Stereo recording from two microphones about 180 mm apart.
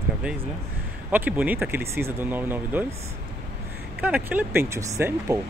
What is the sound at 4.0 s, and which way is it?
Speech, 10° right (ahead or behind).